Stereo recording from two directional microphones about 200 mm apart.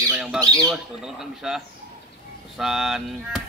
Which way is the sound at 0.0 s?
5° right (ahead or behind).